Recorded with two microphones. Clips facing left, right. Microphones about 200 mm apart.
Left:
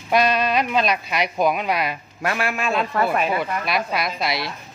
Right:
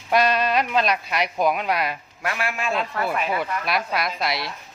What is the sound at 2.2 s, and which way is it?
Speech, 40° left (ahead or behind).